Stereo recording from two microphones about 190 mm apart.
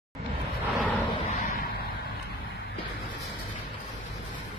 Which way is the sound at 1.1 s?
35° left (ahead or behind).